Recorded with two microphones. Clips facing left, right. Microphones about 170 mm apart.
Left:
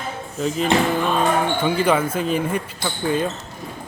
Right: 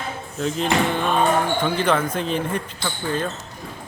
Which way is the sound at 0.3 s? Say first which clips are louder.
Left 2 dB; 5° left (ahead or behind).